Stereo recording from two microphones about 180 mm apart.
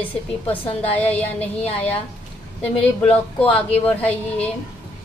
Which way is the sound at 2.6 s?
5° left (ahead or behind).